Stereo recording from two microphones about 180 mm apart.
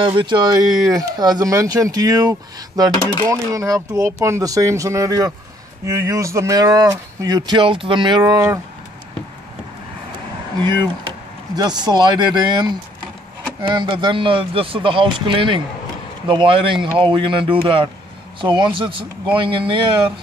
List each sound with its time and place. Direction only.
0.2 s speech: 25° right (ahead or behind)
8.2 s speech: 15° right (ahead or behind)
11.5 s speech: 25° right (ahead or behind)